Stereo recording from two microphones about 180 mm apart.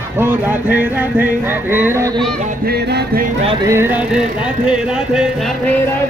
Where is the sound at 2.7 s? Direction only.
60° right (ahead or behind).